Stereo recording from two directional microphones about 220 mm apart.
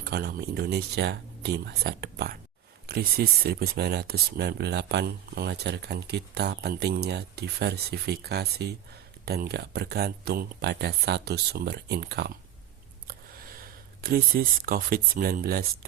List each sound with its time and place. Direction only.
0.0 s speech: 45° right (ahead or behind)